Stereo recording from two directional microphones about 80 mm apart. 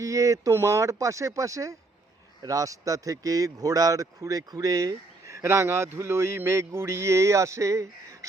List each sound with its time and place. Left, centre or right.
0.0 s speech: right